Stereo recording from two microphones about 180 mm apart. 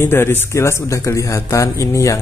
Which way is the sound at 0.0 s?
15° left (ahead or behind).